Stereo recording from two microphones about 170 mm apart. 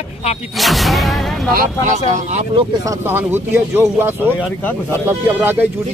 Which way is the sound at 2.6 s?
25° right (ahead or behind).